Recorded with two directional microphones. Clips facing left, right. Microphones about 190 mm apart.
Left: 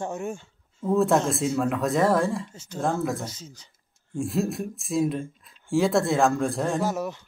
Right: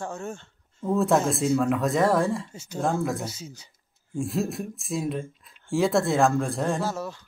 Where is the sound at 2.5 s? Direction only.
10° right (ahead or behind).